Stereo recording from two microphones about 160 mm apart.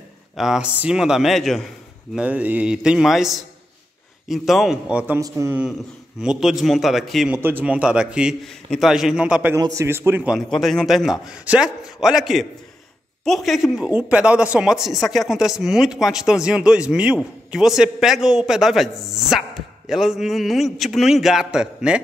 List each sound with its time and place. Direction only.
0.4 s a man's voice: 5° right (ahead or behind)
6.2 s speech: centre (ahead or behind)
7.3 s speech: 10° right (ahead or behind)
9.6 s a man's voice: 20° right (ahead or behind)
10.3 s speech: centre (ahead or behind)